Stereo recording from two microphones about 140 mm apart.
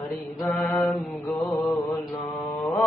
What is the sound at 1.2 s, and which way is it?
Mantra, 15° left (ahead or behind).